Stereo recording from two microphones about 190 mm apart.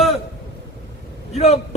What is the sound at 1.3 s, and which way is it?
Speech, 35° left (ahead or behind).